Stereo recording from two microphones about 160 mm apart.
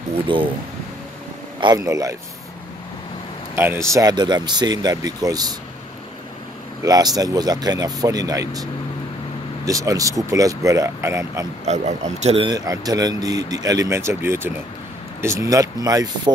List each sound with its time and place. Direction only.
0.1 s speech: 35° right (ahead or behind)
1.6 s speech: 25° right (ahead or behind)
3.5 s speech: 15° right (ahead or behind)
6.8 s speech: 25° right (ahead or behind)
9.7 s speech: 20° right (ahead or behind)
11.6 s speech: 45° right (ahead or behind)
12.4 s speech: 25° right (ahead or behind)